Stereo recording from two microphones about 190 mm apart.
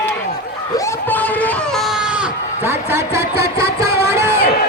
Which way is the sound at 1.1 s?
10° left (ahead or behind).